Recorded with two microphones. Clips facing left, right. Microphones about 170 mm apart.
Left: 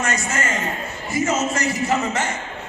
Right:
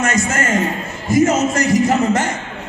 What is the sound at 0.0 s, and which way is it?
A man's voice, 45° right (ahead or behind).